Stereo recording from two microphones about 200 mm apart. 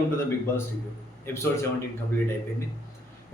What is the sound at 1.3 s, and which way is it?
Speech, 10° left (ahead or behind).